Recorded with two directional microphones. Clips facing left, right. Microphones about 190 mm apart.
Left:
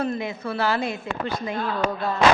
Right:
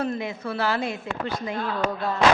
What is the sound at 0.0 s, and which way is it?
Speech, 15° left (ahead or behind).